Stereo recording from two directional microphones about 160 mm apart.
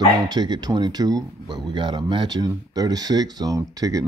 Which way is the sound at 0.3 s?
25° right (ahead or behind).